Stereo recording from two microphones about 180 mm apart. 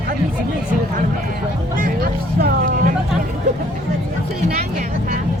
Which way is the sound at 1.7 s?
50° right (ahead or behind).